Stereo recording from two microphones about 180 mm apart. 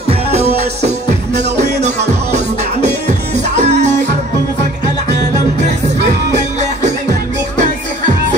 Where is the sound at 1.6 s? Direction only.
40° right (ahead or behind).